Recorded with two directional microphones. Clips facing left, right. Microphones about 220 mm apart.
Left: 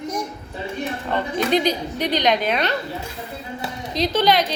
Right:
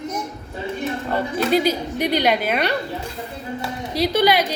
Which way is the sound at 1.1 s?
5° right (ahead or behind).